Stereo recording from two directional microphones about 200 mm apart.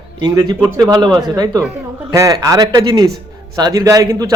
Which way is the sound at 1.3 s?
15° right (ahead or behind).